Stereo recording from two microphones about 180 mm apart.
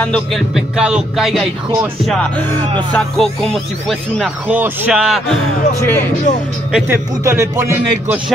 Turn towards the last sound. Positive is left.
turn(degrees=-15)  # may be behind; listen again after turning